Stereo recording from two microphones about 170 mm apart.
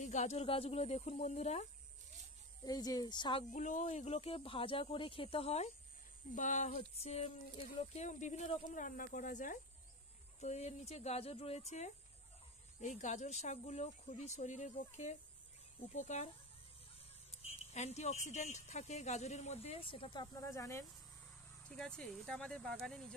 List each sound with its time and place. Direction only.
0.0 s speech: 40° left (ahead or behind)
2.6 s speech: 20° left (ahead or behind)
3.5 s speech: 45° left (ahead or behind)
6.3 s speech: 45° left (ahead or behind)
17.4 s speech: 40° left (ahead or behind); by 20.8 s 15° left (ahead or behind)
21.6 s speech: 5° left (ahead or behind)